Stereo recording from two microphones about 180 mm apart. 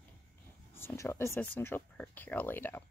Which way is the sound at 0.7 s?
15° left (ahead or behind).